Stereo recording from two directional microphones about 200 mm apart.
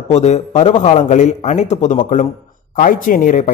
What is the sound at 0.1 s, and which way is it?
Speech, 35° left (ahead or behind).